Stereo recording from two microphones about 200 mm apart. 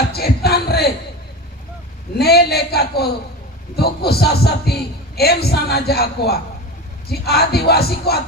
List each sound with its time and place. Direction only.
0.1 s music: 50° left (ahead or behind)
2.1 s a man's voice: 55° left (ahead or behind)